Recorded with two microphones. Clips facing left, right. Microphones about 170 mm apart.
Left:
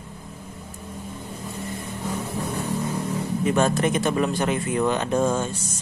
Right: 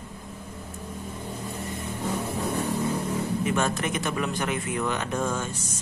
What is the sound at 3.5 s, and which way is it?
Speech, 35° left (ahead or behind).